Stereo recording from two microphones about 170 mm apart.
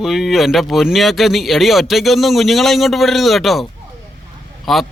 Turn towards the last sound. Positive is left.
turn(degrees=0)  # may be behind; listen again after turning